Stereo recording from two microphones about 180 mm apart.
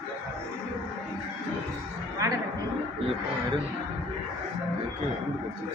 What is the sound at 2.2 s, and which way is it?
Music, 20° right (ahead or behind).